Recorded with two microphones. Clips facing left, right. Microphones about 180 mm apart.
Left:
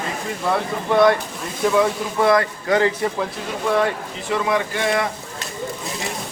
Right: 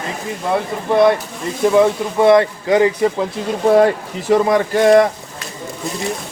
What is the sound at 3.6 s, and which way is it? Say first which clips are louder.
Speech: right 8 dB; 40° right (ahead or behind).